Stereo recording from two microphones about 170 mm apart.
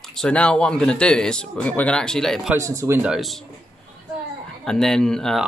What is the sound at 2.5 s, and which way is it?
Speech, 20° right (ahead or behind).